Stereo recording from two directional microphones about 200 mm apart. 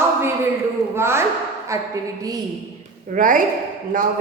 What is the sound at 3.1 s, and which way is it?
Speech, 40° right (ahead or behind).